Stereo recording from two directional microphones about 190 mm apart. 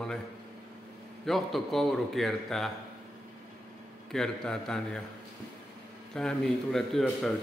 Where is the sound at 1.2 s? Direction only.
Centre (ahead or behind).